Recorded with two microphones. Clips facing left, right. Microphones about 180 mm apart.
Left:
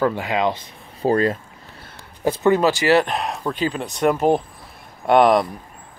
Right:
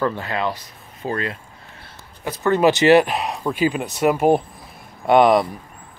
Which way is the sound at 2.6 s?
20° right (ahead or behind).